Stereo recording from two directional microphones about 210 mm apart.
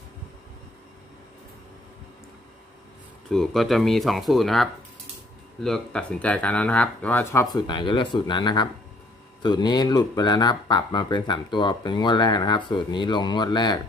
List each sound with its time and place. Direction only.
3.3 s speech: centre (ahead or behind); by 13.7 s 20° left (ahead or behind)